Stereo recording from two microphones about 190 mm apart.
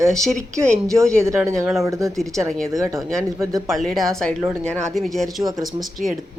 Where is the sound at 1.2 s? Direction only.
15° right (ahead or behind).